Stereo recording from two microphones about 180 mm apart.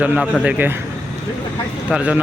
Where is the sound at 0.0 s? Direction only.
5° right (ahead or behind).